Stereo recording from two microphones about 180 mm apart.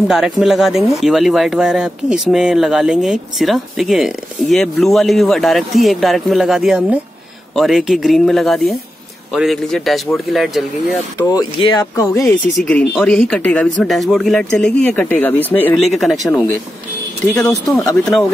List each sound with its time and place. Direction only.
0.1 s speech: centre (ahead or behind)
11.2 s speech: 20° left (ahead or behind)
12.6 s speech: 5° left (ahead or behind)
15.9 s speech: centre (ahead or behind)
17.5 s speech: 15° left (ahead or behind)